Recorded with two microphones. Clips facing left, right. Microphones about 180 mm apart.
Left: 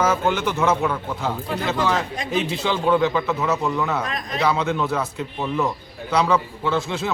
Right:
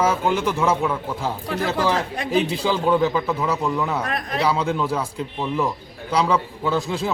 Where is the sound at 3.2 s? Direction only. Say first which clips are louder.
Even; centre (ahead or behind).